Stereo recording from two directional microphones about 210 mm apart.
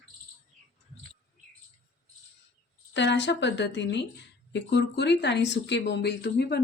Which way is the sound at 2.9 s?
55° left (ahead or behind).